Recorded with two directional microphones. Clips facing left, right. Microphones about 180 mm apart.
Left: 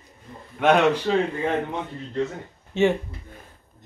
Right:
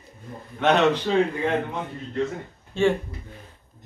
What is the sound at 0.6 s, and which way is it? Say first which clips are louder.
Speech: left 1 dB; 10° left (ahead or behind).